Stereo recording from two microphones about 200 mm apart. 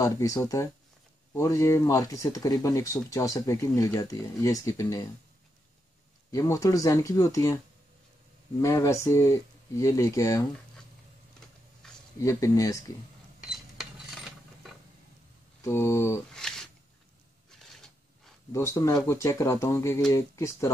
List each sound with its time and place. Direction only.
0.0 s speech: 15° left (ahead or behind)
6.3 s speech: 15° left (ahead or behind)
8.5 s speech: 15° left (ahead or behind)
11.8 s a sound: 5° left (ahead or behind)
12.2 s speech: 15° left (ahead or behind)
13.4 s mechanisms: centre (ahead or behind)
15.6 s speech: 15° left (ahead or behind)
16.3 s a sound: 5° left (ahead or behind)
18.5 s speech: 15° left (ahead or behind)